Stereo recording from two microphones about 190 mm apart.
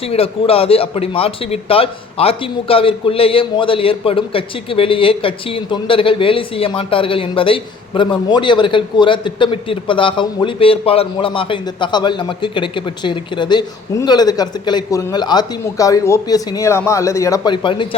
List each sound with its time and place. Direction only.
0.0 s a man's voice: 30° left (ahead or behind)